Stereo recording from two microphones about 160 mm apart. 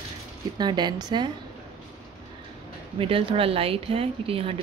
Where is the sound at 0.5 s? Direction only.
25° right (ahead or behind).